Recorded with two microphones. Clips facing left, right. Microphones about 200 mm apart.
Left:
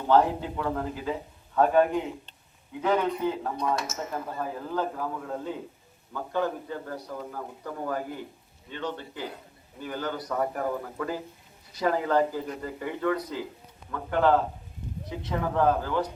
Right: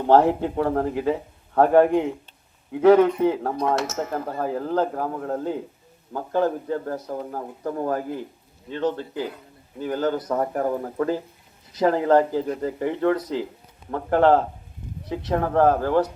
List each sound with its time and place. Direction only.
0.1 s a man's voice: 65° right (ahead or behind)
2.7 s a man's voice: 75° right (ahead or behind); by 4.2 s 60° right (ahead or behind)
4.4 s a man's voice: 45° right (ahead or behind)
13.9 s a man's voice: 65° right (ahead or behind)